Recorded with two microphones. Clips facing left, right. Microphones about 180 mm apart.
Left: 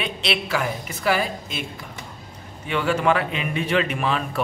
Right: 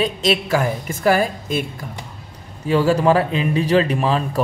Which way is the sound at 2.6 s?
35° right (ahead or behind).